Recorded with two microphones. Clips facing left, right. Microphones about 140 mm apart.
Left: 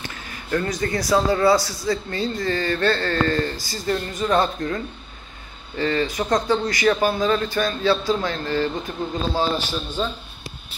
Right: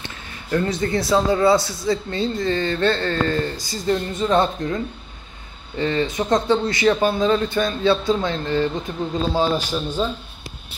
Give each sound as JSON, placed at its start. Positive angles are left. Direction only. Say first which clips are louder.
{"t": 0.0, "sound": "a man's voice", "louder": "left 1 dB", "side_deg": -25}
{"t": 10.0, "sound": "speech", "louder": "right 2 dB", "side_deg": -5}